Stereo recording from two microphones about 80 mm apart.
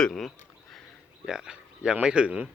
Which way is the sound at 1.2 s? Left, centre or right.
Centre.